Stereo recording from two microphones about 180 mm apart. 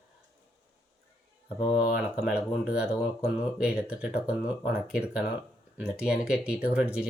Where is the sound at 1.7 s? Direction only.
55° left (ahead or behind).